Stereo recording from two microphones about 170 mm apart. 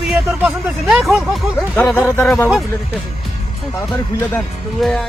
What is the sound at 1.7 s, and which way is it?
Speech, 10° left (ahead or behind).